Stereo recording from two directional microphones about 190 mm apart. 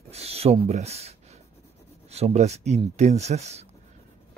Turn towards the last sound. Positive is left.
turn(degrees=-35)  # may be behind; listen again after turning